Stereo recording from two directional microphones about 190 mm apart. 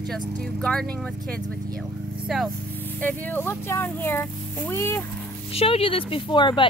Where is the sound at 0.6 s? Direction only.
Centre (ahead or behind).